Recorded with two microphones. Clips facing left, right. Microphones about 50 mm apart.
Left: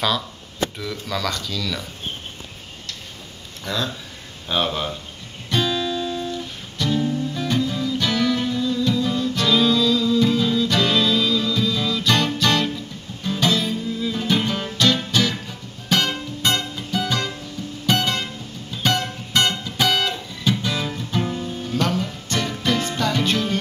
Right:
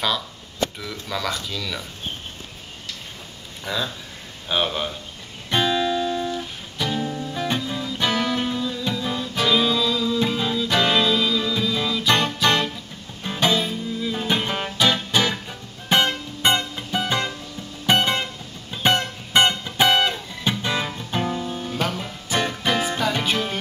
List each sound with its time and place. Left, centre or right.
0.7 s speech: centre
3.6 s speech: centre
5.5 s music: right
14.1 s music: right
21.6 s music: centre